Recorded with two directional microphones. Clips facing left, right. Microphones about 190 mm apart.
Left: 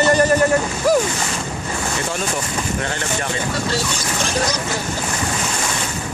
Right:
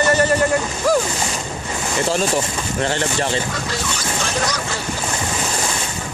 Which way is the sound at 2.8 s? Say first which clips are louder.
Right 3 dB; 30° right (ahead or behind).